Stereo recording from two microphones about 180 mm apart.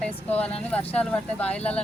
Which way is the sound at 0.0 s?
5° left (ahead or behind).